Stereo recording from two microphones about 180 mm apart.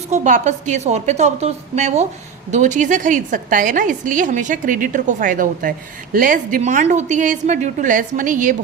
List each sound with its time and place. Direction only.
0.1 s a woman's voice: 40° right (ahead or behind)